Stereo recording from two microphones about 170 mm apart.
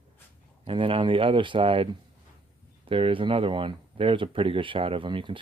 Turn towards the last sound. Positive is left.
turn(degrees=-30)  # may be behind; listen again after turning